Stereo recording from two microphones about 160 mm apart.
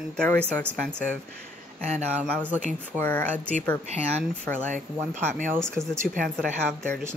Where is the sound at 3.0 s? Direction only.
10° left (ahead or behind).